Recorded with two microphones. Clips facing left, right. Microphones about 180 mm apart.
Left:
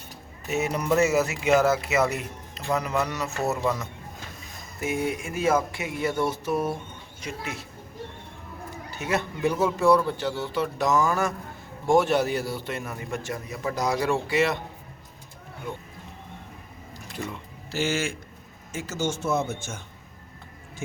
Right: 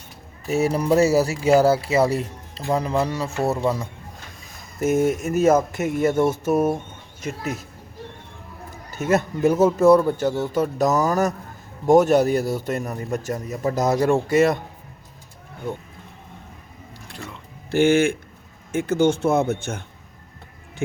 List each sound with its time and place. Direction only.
0.4 s speech: 35° right (ahead or behind)
4.8 s speech: 45° right (ahead or behind)
8.9 s speech: 40° right (ahead or behind)
17.7 s speech: 55° right (ahead or behind)